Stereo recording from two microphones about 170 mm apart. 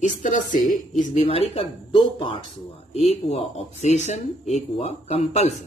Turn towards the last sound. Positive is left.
turn(degrees=40)  # may be behind; listen again after turning